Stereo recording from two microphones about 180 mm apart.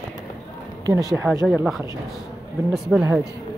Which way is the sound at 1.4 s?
Centre (ahead or behind).